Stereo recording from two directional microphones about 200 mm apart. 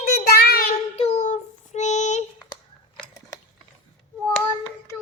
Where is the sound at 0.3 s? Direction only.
50° left (ahead or behind).